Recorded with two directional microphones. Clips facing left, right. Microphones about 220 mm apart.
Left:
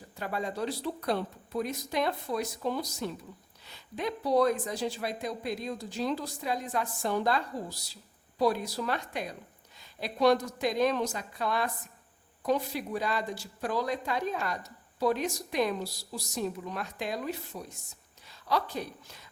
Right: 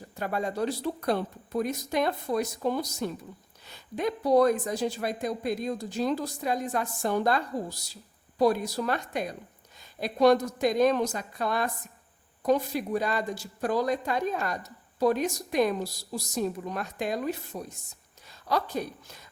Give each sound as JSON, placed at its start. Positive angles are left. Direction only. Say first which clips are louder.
{"t": 0.2, "sound": "a woman's voice", "louder": "right 4 dB", "side_deg": -45}